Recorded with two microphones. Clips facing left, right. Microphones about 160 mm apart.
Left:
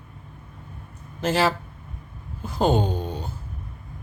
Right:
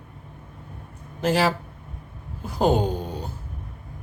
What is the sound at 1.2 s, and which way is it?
Speech, 10° right (ahead or behind).